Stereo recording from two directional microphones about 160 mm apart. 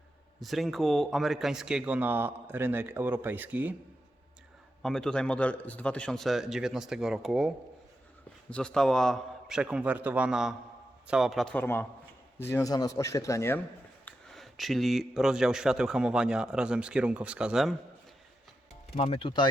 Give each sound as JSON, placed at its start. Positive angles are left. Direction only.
{"t": 0.3, "sound": "speech", "side_deg": 0}
{"t": 4.8, "sound": "speech", "side_deg": 5}
{"t": 14.0, "sound": "speech", "side_deg": 0}
{"t": 18.9, "sound": "speech", "side_deg": 40}